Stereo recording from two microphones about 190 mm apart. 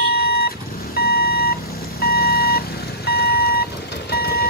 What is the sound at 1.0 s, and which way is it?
Beep, 55° left (ahead or behind).